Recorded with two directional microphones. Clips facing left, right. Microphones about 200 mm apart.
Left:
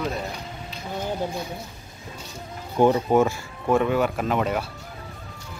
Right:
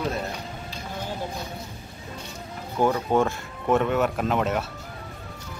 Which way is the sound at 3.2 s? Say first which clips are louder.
Left 3 dB; centre (ahead or behind).